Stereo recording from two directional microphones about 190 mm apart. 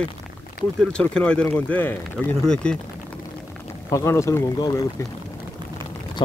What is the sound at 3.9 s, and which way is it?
Speech, 15° left (ahead or behind).